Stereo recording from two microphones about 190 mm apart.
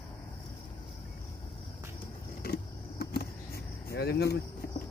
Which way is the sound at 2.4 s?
50° left (ahead or behind).